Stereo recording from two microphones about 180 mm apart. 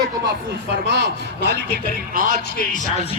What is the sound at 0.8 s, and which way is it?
Speech, 65° right (ahead or behind).